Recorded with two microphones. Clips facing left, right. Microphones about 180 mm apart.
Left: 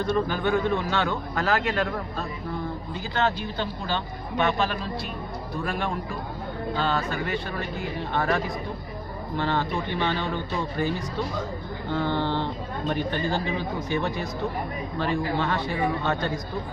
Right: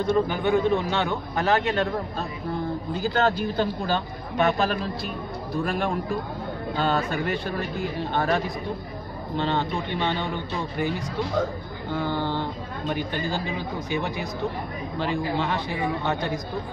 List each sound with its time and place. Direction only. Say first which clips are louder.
0.0 s a man's voice: right 2 dB; 15° right (ahead or behind)
3.0 s speech: right 3 dB; 45° right (ahead or behind)
6.8 s speech: right 3 dB; 50° right (ahead or behind)
8.1 s speech: right 1 dB; 30° right (ahead or behind)
9.4 s a man's voice: right 1 dB; 20° right (ahead or behind)
11.9 s speech: left 1 dB; 10° right (ahead or behind)